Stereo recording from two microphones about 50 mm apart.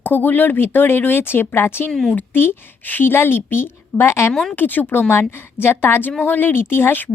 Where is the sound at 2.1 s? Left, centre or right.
Left.